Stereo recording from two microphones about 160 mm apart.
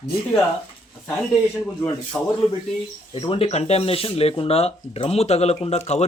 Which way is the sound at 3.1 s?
35° left (ahead or behind).